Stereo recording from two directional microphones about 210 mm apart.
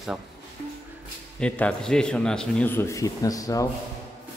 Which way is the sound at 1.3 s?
5° left (ahead or behind).